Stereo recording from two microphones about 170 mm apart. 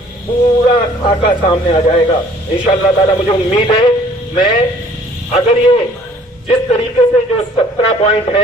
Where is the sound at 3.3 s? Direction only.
30° left (ahead or behind).